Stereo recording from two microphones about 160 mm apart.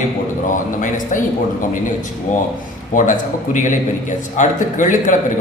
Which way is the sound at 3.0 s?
50° left (ahead or behind).